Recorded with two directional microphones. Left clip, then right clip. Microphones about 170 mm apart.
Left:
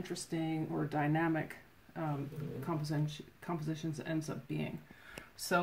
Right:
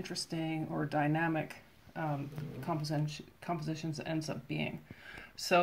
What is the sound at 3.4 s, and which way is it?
Speech, 15° right (ahead or behind).